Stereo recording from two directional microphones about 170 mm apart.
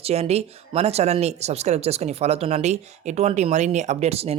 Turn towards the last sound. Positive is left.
turn(degrees=-35)  # may be behind; listen again after turning